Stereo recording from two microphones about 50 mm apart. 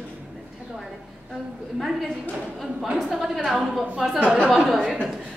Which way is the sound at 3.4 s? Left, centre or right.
Centre.